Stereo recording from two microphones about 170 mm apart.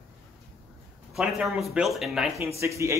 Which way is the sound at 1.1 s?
Centre (ahead or behind).